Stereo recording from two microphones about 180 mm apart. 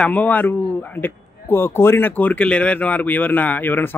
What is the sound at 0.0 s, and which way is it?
Speech, 10° left (ahead or behind).